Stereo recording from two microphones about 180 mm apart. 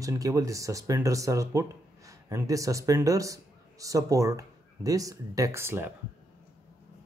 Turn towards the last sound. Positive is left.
turn(degrees=-15)  # may be behind; listen again after turning